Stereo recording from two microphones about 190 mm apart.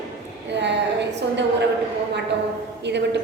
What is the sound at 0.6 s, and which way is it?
Speech, 65° right (ahead or behind).